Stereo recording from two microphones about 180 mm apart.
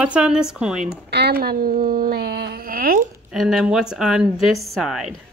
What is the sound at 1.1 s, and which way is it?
Speech, 65° right (ahead or behind).